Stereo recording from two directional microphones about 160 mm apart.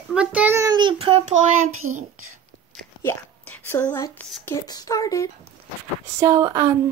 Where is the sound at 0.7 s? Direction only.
30° right (ahead or behind).